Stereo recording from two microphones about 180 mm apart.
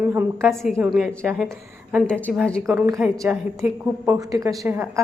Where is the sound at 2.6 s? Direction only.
15° right (ahead or behind).